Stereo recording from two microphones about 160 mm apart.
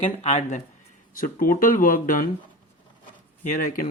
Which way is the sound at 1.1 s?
60° left (ahead or behind).